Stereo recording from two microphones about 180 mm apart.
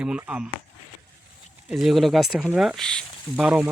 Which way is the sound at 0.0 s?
5° right (ahead or behind).